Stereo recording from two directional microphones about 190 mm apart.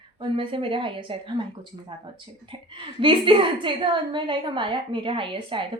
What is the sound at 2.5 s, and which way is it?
A woman's voice, 25° right (ahead or behind).